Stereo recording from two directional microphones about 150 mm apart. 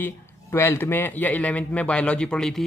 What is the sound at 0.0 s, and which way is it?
A man's voice, 15° left (ahead or behind).